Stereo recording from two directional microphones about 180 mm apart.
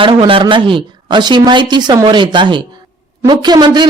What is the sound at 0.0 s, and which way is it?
A man's voice, 30° right (ahead or behind).